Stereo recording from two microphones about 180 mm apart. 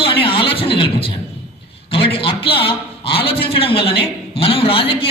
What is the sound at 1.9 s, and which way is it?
A man's voice, 30° left (ahead or behind).